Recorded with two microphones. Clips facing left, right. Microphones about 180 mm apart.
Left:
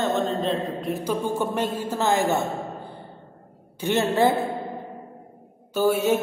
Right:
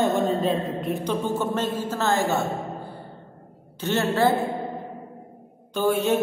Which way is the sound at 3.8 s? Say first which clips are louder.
Left 1 dB; 15° left (ahead or behind).